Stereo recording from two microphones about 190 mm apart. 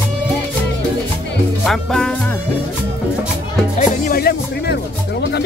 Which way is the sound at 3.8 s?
50° left (ahead or behind).